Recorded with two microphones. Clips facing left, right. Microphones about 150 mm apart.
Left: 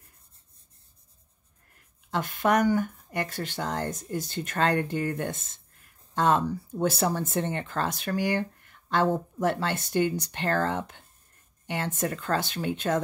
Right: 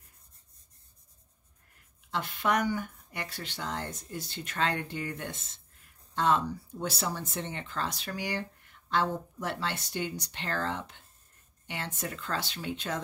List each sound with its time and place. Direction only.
2.0 s speech: 45° left (ahead or behind)